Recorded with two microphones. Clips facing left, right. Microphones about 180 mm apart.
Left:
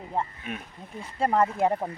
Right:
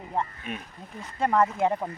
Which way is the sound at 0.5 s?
Centre (ahead or behind).